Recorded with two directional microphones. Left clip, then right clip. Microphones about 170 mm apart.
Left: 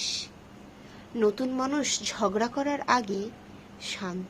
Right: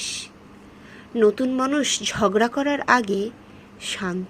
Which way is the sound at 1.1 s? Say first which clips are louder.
Right 7 dB; 20° right (ahead or behind).